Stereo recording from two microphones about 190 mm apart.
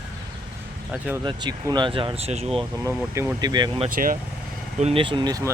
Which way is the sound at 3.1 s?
15° right (ahead or behind).